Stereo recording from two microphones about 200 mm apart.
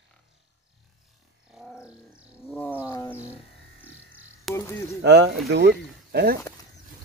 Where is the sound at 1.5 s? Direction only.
5° right (ahead or behind).